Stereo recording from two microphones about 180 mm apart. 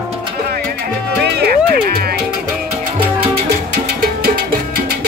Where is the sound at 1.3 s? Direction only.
60° right (ahead or behind).